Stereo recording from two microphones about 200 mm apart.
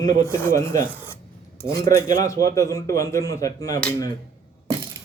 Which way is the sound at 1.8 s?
15° left (ahead or behind).